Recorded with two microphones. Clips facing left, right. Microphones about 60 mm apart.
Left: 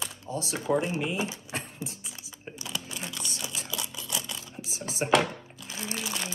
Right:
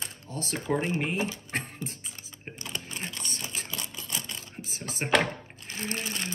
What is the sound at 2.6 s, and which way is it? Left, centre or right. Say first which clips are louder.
Crumpling: even; right.